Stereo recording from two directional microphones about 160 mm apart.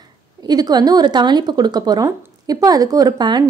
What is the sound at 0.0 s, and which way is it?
A woman's voice, 25° right (ahead or behind).